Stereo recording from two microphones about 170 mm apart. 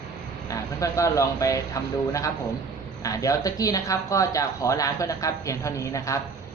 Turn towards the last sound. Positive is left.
turn(degrees=20)  # may be behind; listen again after turning